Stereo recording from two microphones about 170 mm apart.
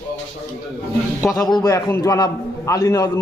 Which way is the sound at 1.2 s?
20° left (ahead or behind).